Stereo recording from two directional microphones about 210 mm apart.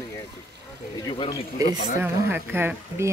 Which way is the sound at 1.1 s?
20° left (ahead or behind).